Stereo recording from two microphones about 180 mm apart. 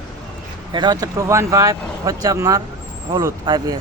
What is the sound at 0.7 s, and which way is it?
Speech, 25° right (ahead or behind).